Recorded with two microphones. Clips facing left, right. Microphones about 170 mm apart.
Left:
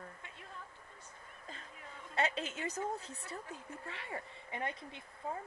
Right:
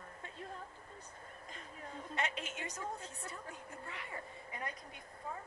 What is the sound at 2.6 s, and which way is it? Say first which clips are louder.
Speech: left 7 dB; 35° right (ahead or behind).